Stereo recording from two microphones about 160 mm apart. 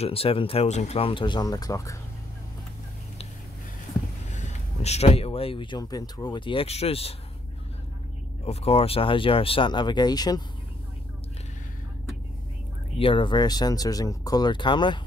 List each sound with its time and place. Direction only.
0.0 s speech: 35° left (ahead or behind); by 2.0 s 20° left (ahead or behind)
4.3 s speech: 45° left (ahead or behind)
8.5 s speech: 40° left (ahead or behind)
13.0 s speech: 30° left (ahead or behind)